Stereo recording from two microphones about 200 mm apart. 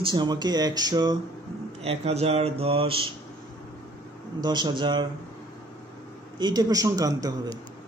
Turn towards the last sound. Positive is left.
turn(degrees=-15)  # may be behind; listen again after turning